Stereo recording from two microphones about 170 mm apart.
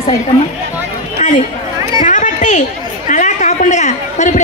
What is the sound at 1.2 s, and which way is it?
Chatter, 45° left (ahead or behind).